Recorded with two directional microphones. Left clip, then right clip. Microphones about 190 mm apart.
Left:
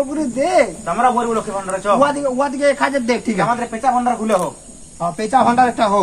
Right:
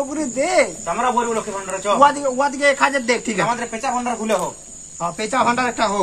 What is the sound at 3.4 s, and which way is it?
Speech, 20° right (ahead or behind).